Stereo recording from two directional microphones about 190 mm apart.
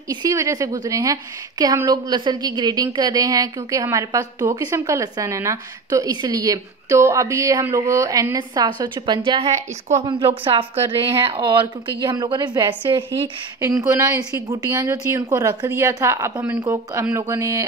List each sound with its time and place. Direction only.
0.1 s a woman's voice: 15° right (ahead or behind)